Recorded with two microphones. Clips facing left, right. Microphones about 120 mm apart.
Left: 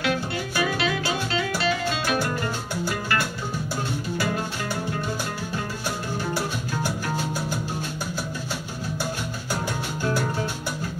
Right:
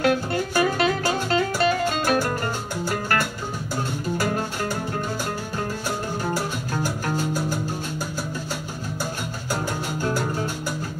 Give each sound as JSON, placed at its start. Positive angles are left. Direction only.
{"t": 0.0, "sound": "music", "side_deg": -45}